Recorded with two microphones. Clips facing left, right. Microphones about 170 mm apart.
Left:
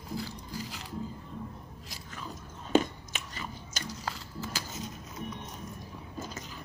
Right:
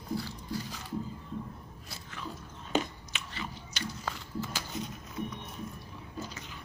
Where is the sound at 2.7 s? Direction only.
45° left (ahead or behind).